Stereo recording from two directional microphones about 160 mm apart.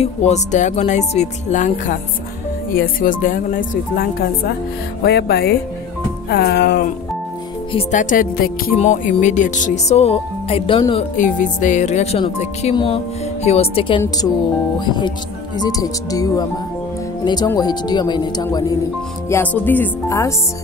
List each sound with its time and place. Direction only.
0.0 s speech: 45° left (ahead or behind)
2.7 s speech: 60° left (ahead or behind)
5.0 s speech: 90° left
6.2 s music: 90° left
7.9 s speech: 55° left (ahead or behind)
8.7 s speech: 45° left (ahead or behind); by 11.1 s 30° left (ahead or behind)
11.1 s speech: 55° left (ahead or behind); by 18.8 s 25° left (ahead or behind)
19.2 s speech: 15° left (ahead or behind)